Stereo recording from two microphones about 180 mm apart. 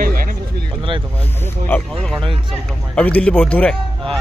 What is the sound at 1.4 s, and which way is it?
Speech, 10° left (ahead or behind).